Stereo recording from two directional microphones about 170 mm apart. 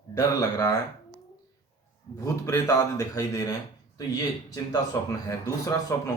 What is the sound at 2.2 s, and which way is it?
A man's voice, 20° left (ahead or behind).